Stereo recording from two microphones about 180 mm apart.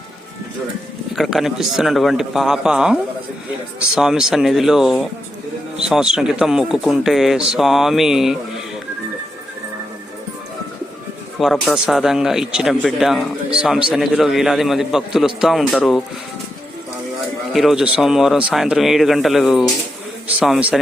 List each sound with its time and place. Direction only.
1.1 s speech: centre (ahead or behind)
11.3 s speech: centre (ahead or behind)
17.5 s speech: centre (ahead or behind)